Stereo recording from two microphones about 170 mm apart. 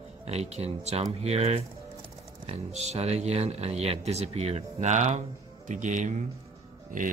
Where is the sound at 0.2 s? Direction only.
40° right (ahead or behind).